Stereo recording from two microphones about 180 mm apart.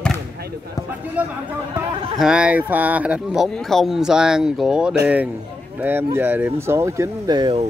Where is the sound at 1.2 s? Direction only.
10° right (ahead or behind).